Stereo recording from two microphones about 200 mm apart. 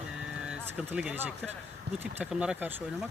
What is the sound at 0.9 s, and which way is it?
Speech, 5° right (ahead or behind).